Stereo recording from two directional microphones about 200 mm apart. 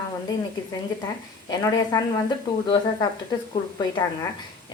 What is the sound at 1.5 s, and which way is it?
Speech, 20° left (ahead or behind).